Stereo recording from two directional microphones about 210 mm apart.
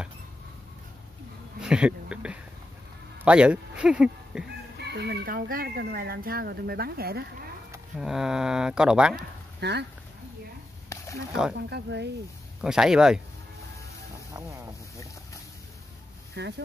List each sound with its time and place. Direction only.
1.6 s a sound: 5° right (ahead or behind)
3.3 s speech: 5° right (ahead or behind)
4.7 s speech: 50° right (ahead or behind)
8.0 s speech: 5° right (ahead or behind)
9.6 s speech: 55° right (ahead or behind)
10.9 s a sound: 15° left (ahead or behind)
11.7 s speech: 55° right (ahead or behind)
12.6 s speech: 5° right (ahead or behind)
16.3 s speech: 55° right (ahead or behind)